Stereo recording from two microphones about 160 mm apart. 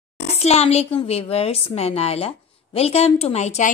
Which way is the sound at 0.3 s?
40° left (ahead or behind).